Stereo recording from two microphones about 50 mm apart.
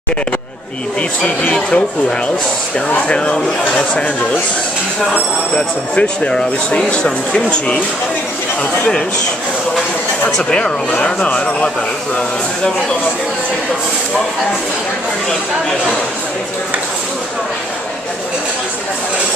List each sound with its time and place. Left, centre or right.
1.5 s speech: centre
5.5 s speech: centre
10.3 s speech: centre